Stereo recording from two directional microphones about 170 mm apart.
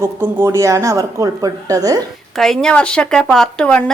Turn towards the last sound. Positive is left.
turn(degrees=5)  # may be behind; listen again after turning